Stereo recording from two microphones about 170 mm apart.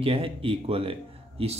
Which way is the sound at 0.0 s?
35° right (ahead or behind).